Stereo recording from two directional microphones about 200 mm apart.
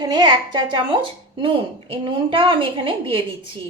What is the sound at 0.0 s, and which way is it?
Speech, 20° right (ahead or behind).